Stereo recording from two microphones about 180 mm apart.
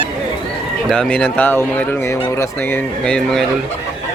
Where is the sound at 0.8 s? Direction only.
5° left (ahead or behind).